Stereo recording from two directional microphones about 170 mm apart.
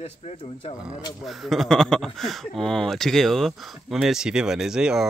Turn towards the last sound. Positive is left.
turn(degrees=-5)  # may be behind; listen again after turning